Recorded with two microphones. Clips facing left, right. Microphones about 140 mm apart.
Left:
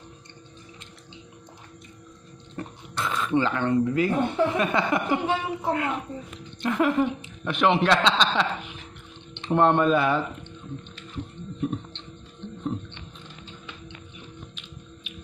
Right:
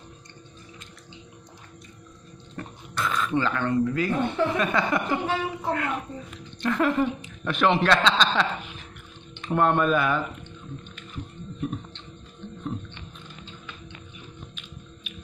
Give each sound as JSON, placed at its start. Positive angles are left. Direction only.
{"t": 2.5, "sound": "speech", "side_deg": 25}
{"t": 11.6, "sound": "music", "side_deg": 25}